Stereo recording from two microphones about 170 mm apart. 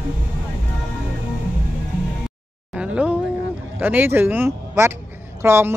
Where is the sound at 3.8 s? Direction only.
10° right (ahead or behind).